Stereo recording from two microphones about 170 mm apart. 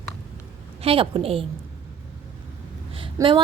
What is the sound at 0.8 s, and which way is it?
Speech, 35° right (ahead or behind).